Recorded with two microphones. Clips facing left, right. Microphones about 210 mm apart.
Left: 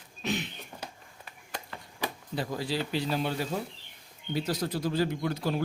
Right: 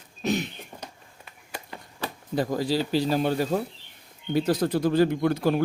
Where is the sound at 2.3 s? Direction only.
45° right (ahead or behind).